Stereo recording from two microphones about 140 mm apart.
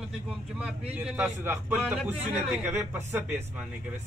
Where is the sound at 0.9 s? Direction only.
5° right (ahead or behind).